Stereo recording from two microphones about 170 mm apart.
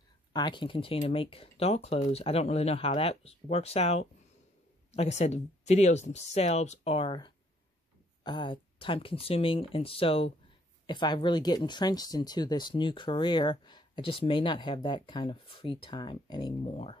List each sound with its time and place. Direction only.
0.3 s speech: 25° left (ahead or behind)